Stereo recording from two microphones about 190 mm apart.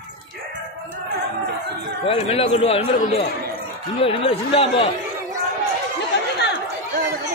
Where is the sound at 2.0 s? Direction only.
30° left (ahead or behind).